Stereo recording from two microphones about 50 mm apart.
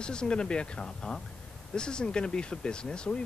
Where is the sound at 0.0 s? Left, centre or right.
Centre.